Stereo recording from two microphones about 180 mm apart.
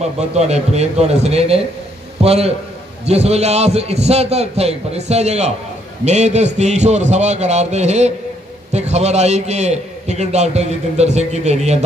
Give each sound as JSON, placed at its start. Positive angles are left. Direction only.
{"t": 0.0, "sound": "a man's voice", "side_deg": -35}